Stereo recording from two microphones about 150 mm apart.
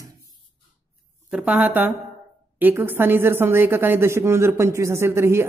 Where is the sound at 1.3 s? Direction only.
10° right (ahead or behind).